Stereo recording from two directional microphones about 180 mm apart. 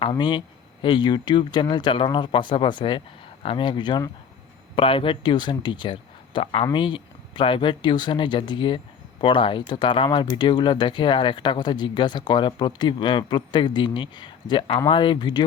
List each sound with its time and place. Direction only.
0.0 s speech: 25° left (ahead or behind)